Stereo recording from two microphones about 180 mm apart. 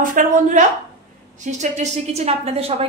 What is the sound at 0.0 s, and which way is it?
A woman's voice, 45° right (ahead or behind).